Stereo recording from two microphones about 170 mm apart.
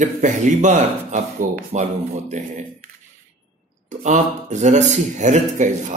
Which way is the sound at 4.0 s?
45° right (ahead or behind).